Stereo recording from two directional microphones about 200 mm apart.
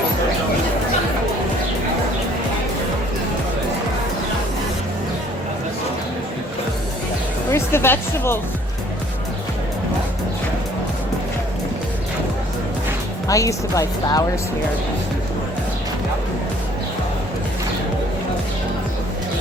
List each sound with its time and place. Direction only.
7.5 s speech: 10° left (ahead or behind)
13.2 s speech: 15° left (ahead or behind)